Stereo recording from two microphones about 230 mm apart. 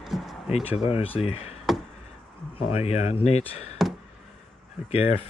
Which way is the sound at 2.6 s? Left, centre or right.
Left.